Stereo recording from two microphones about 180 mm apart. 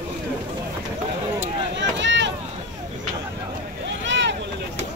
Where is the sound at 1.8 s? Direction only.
85° right.